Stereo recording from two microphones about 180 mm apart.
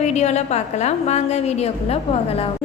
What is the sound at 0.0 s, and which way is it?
A woman's voice, 40° left (ahead or behind).